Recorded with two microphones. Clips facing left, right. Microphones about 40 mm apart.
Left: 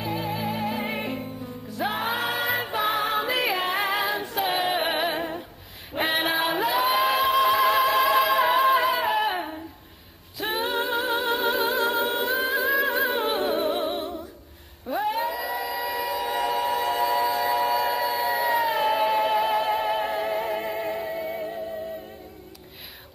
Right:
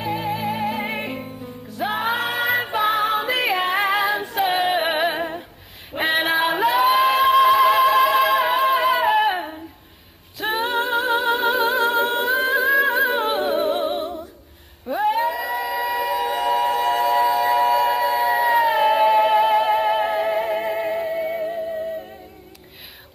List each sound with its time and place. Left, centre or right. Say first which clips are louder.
0.0 s music: right 4 dB; centre
5.9 s singing: right 4 dB; centre
10.4 s singing: right 4 dB; centre
12.0 s humming: right 5 dB; centre
14.9 s a sound: right 5 dB; centre